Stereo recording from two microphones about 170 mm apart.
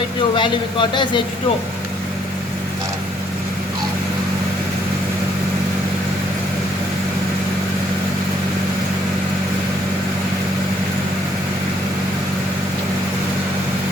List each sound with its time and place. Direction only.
0.3 s speech: 30° left (ahead or behind)